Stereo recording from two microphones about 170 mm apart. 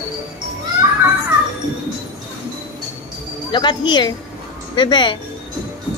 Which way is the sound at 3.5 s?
25° left (ahead or behind).